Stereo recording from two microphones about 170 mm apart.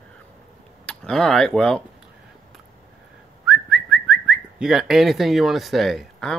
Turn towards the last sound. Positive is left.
turn(degrees=0)  # may be behind; listen again after turning